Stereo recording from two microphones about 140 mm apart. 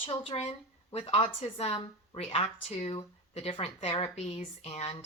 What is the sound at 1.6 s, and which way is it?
Speech, 45° left (ahead or behind).